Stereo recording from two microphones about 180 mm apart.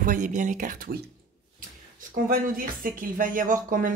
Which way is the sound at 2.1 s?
50° right (ahead or behind).